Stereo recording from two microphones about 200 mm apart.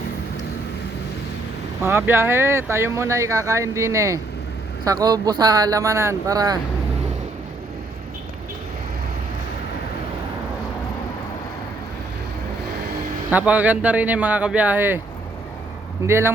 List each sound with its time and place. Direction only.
1.8 s speech: 10° right (ahead or behind)
13.3 s speech: 5° right (ahead or behind)
16.0 s speech: 10° right (ahead or behind)